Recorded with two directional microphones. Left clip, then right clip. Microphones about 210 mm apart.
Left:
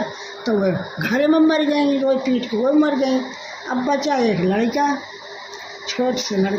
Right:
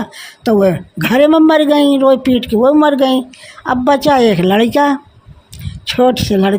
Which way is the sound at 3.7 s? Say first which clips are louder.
Right 9 dB; 55° right (ahead or behind).